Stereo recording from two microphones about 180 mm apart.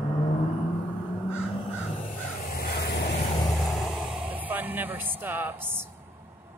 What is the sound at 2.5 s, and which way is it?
Vehicle, 60° left (ahead or behind).